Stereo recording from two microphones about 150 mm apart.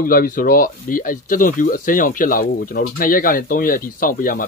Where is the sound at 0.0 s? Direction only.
70° left (ahead or behind).